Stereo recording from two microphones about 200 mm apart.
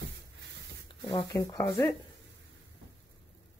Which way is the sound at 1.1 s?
20° left (ahead or behind).